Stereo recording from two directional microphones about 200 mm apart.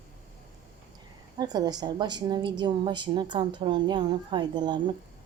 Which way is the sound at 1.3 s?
20° right (ahead or behind).